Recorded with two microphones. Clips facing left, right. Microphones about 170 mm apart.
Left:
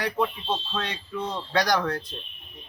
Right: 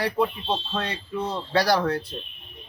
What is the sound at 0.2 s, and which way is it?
Speech, 10° right (ahead or behind).